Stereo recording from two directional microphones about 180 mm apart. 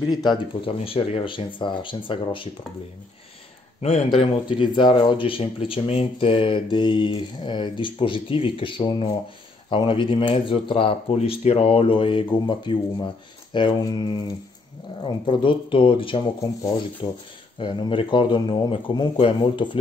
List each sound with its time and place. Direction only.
0.1 s speech: 25° left (ahead or behind)
3.8 s speech: 35° left (ahead or behind)